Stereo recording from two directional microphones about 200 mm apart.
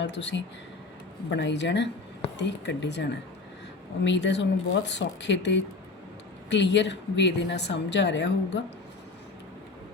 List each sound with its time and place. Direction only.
0.0 s speech: 65° left (ahead or behind)